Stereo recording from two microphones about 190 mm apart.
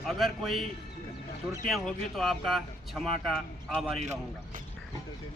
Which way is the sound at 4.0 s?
40° right (ahead or behind).